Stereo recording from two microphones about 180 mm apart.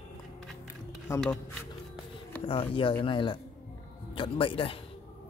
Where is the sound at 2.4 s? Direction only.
30° left (ahead or behind).